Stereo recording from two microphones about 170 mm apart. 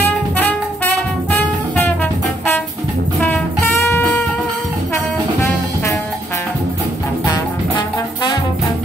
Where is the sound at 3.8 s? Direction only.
15° left (ahead or behind).